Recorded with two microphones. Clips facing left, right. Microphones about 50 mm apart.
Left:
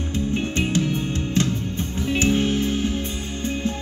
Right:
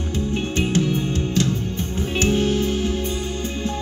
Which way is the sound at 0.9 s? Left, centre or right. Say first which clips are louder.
Right 1 dB; left.